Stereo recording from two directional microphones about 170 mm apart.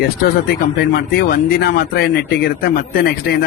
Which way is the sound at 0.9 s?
65° left (ahead or behind).